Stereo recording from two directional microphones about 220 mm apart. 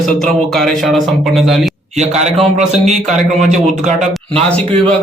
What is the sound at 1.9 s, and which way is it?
Speech, 30° right (ahead or behind).